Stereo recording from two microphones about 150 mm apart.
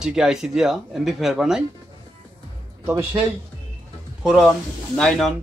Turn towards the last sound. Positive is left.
turn(degrees=5)  # may be behind; listen again after turning